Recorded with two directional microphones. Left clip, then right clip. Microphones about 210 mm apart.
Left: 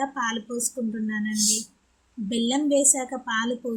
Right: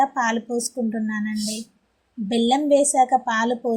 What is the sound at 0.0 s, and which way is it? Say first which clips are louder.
A woman's voice: right 7 dB; 15° right (ahead or behind).